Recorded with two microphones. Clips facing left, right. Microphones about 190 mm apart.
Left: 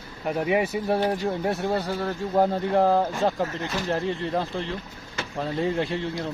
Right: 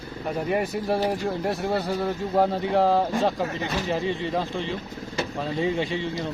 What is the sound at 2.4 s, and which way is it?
Speech, centre (ahead or behind).